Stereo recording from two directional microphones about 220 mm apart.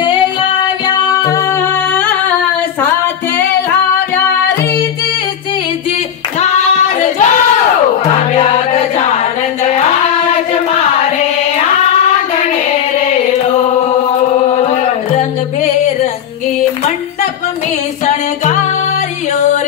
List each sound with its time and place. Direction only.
0.8 s music: 15° left (ahead or behind)
6.4 s singing: 30° left (ahead or behind)
8.4 s music: 30° left (ahead or behind)
14.5 s music: 30° left (ahead or behind)
18.0 s music: 35° left (ahead or behind)